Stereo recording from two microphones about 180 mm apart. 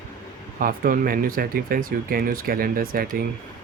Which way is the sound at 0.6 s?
50° right (ahead or behind).